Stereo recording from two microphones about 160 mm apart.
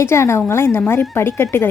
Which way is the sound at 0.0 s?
15° left (ahead or behind).